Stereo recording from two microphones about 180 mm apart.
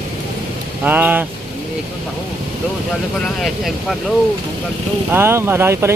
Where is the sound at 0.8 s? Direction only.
10° right (ahead or behind).